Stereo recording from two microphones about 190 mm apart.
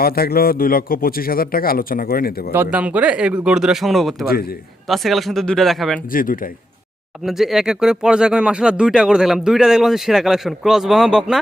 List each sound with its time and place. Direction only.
0.0 s a man's voice: 55° left (ahead or behind)
2.5 s speech: 10° right (ahead or behind)
6.1 s a man's voice: 45° left (ahead or behind)
7.3 s speech: centre (ahead or behind)